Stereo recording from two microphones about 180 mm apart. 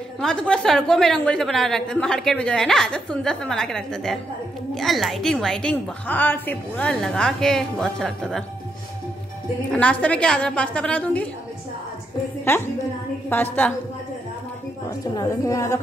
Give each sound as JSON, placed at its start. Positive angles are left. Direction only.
{"t": 0.2, "sound": "a woman's voice", "side_deg": 5}
{"t": 9.7, "sound": "a woman's voice", "side_deg": 5}
{"t": 12.5, "sound": "a woman's voice", "side_deg": 15}
{"t": 14.9, "sound": "a woman's voice", "side_deg": 20}